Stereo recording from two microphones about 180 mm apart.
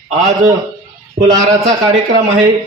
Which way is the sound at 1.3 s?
20° right (ahead or behind).